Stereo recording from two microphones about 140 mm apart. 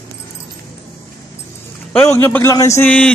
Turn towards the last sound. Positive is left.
turn(degrees=10)  # may be behind; listen again after turning